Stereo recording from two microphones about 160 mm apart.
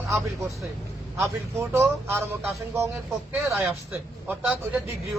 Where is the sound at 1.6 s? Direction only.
15° right (ahead or behind).